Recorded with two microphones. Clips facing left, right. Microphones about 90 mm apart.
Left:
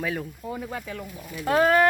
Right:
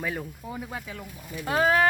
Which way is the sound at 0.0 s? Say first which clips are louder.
Left 3 dB; 10° right (ahead or behind).